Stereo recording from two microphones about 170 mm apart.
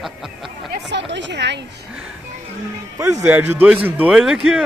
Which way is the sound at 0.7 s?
90° right.